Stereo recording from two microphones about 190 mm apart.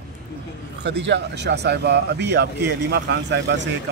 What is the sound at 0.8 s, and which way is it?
Speech, 65° right (ahead or behind).